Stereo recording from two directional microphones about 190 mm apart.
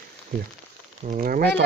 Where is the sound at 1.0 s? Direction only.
45° right (ahead or behind).